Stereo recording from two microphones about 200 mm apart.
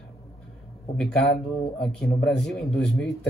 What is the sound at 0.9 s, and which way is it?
A man's voice, 5° left (ahead or behind).